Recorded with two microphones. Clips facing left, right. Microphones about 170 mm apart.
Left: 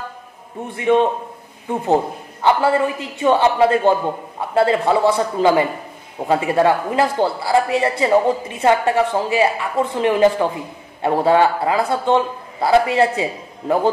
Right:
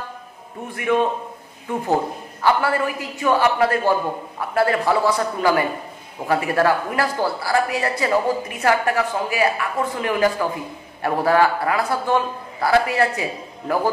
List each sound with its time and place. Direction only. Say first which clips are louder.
0.7 s a woman's voice: left 4 dB; 25° left (ahead or behind)
2.4 s a woman's voice: left 3 dB; 25° left (ahead or behind)